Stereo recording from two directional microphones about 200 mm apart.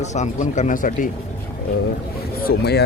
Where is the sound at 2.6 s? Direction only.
55° left (ahead or behind).